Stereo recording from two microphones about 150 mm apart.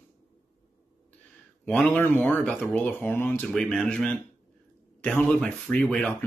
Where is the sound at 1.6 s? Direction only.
10° left (ahead or behind).